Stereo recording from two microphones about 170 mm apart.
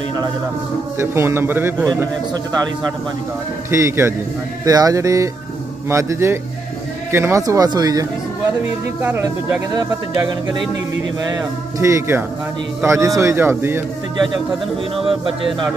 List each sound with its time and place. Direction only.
0.9 s a man's voice: 15° right (ahead or behind)
3.7 s a man's voice: 15° right (ahead or behind)
11.8 s a man's voice: 15° right (ahead or behind)